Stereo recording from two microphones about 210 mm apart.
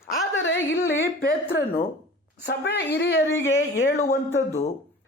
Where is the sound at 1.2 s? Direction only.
50° left (ahead or behind).